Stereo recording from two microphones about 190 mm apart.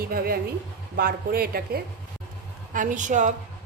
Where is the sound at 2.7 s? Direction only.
45° right (ahead or behind).